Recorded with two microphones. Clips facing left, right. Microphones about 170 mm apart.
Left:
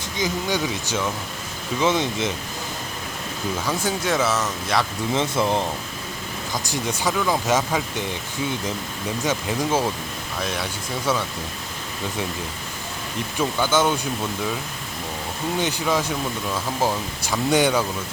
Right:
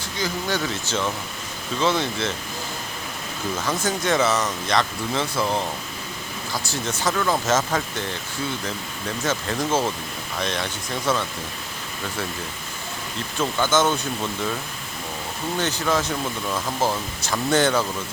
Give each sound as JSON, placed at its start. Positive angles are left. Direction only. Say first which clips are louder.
{"t": 0.2, "sound": "speech", "louder": "left 2 dB", "side_deg": 15}
{"t": 3.6, "sound": "speech", "louder": "even", "side_deg": 10}
{"t": 5.1, "sound": "speech", "louder": "left 2 dB", "side_deg": 20}
{"t": 13.4, "sound": "speech", "louder": "even", "side_deg": 10}
{"t": 15.5, "sound": "speech", "louder": "even", "side_deg": 10}